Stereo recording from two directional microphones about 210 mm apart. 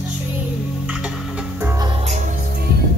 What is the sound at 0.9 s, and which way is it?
Music, 5° right (ahead or behind).